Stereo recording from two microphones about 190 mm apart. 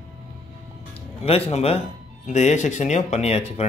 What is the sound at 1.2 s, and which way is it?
Speech, 30° left (ahead or behind).